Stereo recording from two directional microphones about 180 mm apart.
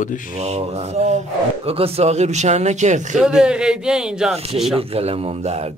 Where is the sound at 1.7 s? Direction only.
35° right (ahead or behind).